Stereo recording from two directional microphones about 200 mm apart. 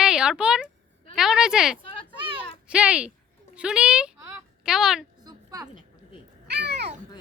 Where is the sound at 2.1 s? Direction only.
25° right (ahead or behind).